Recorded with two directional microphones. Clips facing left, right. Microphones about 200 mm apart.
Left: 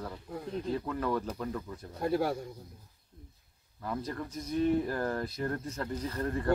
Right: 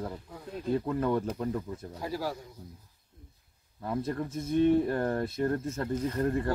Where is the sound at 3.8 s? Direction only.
25° right (ahead or behind).